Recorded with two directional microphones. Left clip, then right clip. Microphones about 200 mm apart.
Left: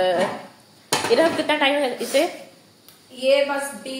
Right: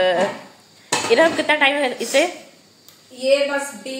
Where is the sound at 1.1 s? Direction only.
25° right (ahead or behind).